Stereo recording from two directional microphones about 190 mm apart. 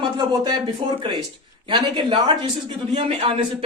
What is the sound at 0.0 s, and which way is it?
A man's voice, 25° right (ahead or behind).